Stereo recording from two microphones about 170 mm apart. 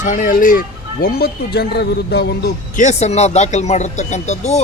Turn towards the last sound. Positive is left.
turn(degrees=40)  # may be behind; listen again after turning